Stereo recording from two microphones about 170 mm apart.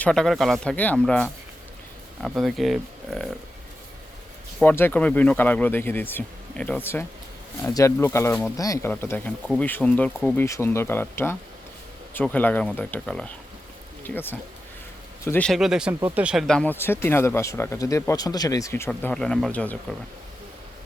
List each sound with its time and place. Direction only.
0.0 s speech: 5° left (ahead or behind)
4.6 s speech: 10° left (ahead or behind)
7.7 s speech: 20° left (ahead or behind)
18.9 s speech: 5° left (ahead or behind)